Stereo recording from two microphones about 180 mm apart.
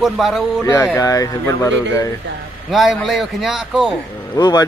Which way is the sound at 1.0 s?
20° left (ahead or behind).